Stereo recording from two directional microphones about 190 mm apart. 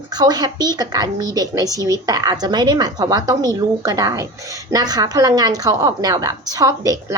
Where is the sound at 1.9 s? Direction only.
20° right (ahead or behind).